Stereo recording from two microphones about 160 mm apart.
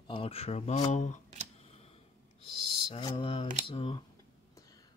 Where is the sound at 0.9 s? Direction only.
45° left (ahead or behind).